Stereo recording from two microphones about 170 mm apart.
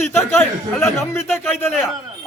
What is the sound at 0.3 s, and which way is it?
A man's voice, 15° left (ahead or behind).